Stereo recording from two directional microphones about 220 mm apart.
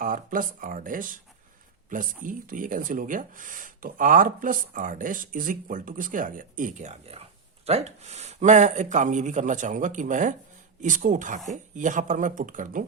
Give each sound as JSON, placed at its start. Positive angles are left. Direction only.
{"t": 0.0, "sound": "speech", "side_deg": -40}
{"t": 2.2, "sound": "speech", "side_deg": -40}